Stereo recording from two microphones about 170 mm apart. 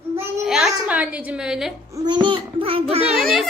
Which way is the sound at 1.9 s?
25° right (ahead or behind).